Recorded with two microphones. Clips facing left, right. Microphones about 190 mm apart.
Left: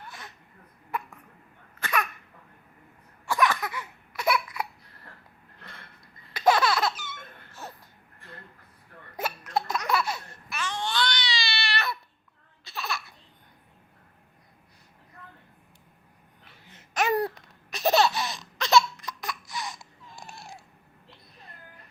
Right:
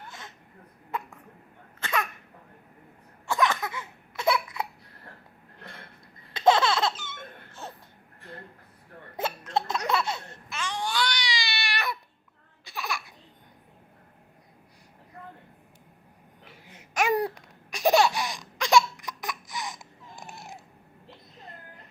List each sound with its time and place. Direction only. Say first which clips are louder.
0.1 s throat clearing: even; 20° right (ahead or behind)
1.8 s a sound: even; 25° right (ahead or behind)
3.2 s a sound: even; 20° right (ahead or behind)
6.3 s laughter: right 1 dB; 25° right (ahead or behind)
9.1 s laughter: right 1 dB; 25° right (ahead or behind)
12.6 s babbling: even; 15° right (ahead or behind)
16.6 s laughter: right 1 dB; 10° right (ahead or behind)